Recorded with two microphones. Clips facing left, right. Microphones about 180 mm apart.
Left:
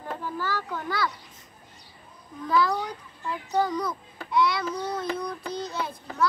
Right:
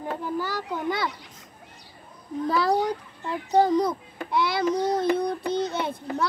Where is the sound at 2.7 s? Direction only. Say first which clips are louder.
Right 7 dB; 45° right (ahead or behind).